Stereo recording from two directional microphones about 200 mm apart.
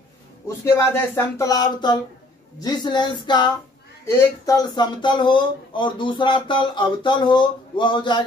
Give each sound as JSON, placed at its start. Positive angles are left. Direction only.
{"t": 0.7, "sound": "speech", "side_deg": 15}